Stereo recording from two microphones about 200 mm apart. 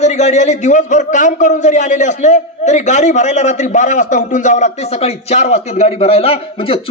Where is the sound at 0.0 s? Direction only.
35° left (ahead or behind).